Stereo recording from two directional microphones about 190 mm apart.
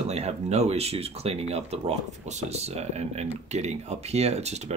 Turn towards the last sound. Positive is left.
turn(degrees=-35)  # may be behind; listen again after turning